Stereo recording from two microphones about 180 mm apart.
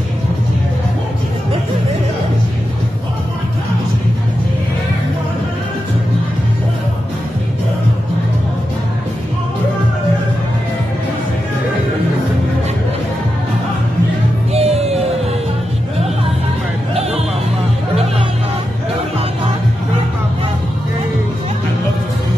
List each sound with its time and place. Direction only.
14.5 s music: 35° right (ahead or behind)